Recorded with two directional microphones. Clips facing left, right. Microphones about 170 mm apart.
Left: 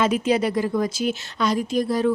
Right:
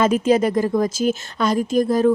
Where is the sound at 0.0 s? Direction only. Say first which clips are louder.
Right 4 dB; 45° right (ahead or behind).